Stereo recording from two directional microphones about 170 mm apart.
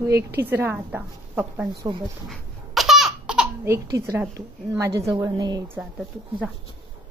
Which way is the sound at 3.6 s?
15° right (ahead or behind).